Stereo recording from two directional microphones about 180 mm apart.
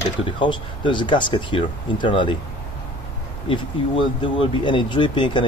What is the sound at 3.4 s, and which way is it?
Speech, 30° left (ahead or behind).